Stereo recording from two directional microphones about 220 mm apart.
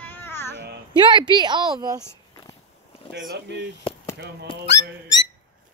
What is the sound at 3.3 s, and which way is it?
Speech, 50° right (ahead or behind).